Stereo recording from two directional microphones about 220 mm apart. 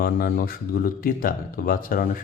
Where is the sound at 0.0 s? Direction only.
40° left (ahead or behind).